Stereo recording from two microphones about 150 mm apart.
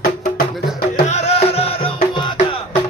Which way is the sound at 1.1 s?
45° left (ahead or behind).